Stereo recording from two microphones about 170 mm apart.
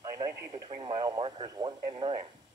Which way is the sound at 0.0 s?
20° right (ahead or behind).